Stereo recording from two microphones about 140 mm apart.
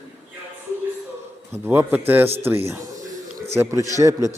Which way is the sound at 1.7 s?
15° right (ahead or behind).